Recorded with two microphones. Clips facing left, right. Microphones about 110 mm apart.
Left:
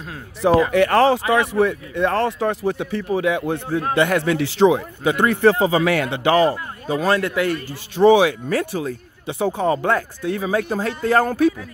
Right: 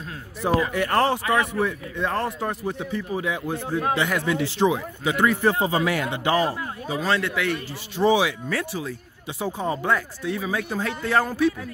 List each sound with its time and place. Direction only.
0.4 s a man's voice: 90° left
6.9 s speech: 50° left (ahead or behind)
8.0 s speech: 55° left (ahead or behind)